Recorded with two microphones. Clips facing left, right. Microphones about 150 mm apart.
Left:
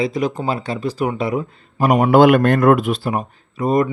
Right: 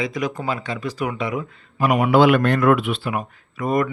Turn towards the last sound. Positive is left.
turn(degrees=25)  # may be behind; listen again after turning